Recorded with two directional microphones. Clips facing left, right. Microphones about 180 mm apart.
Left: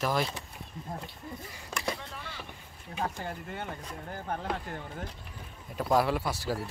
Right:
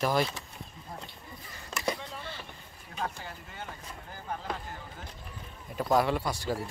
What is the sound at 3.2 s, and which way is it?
Speech, 55° left (ahead or behind).